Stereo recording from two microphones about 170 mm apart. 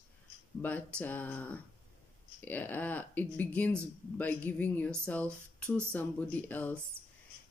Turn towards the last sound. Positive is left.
turn(degrees=10)  # may be behind; listen again after turning